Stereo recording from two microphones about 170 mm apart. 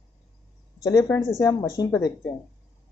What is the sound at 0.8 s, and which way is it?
Speech, 20° left (ahead or behind).